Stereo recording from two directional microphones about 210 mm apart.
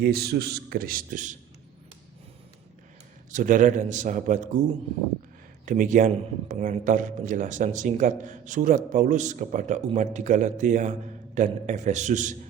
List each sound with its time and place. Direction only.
0.0 s a man's voice: 50° right (ahead or behind)
3.3 s speech: 40° right (ahead or behind)
5.6 s speech: 40° right (ahead or behind)